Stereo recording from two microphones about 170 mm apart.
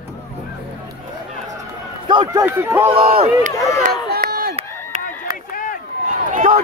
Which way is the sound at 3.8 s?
60° right (ahead or behind).